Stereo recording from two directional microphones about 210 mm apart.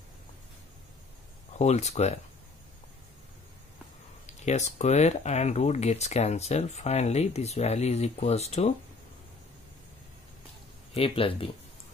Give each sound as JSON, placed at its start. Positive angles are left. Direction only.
{"t": 1.6, "sound": "speech", "side_deg": 30}
{"t": 4.5, "sound": "speech", "side_deg": 35}
{"t": 11.0, "sound": "speech", "side_deg": 25}